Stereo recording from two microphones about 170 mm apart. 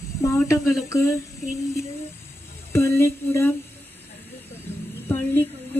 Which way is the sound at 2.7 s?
15° left (ahead or behind).